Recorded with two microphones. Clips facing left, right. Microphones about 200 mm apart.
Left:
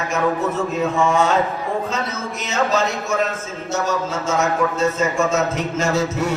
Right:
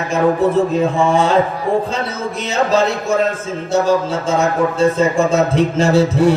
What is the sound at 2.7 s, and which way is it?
A man's voice, 30° right (ahead or behind).